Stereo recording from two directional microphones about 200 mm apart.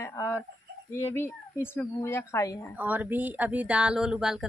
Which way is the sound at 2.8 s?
10° right (ahead or behind).